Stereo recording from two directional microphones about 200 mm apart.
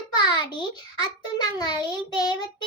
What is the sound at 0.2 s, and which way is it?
A child's voice, 20° left (ahead or behind).